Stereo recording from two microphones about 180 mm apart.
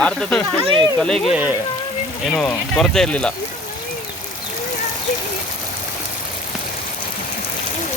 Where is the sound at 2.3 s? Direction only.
5° left (ahead or behind).